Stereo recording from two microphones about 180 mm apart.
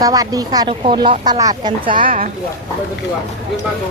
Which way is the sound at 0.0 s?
20° right (ahead or behind).